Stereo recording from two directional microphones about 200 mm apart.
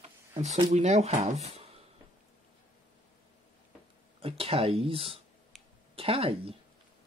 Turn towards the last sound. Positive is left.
turn(degrees=-30)  # may be behind; listen again after turning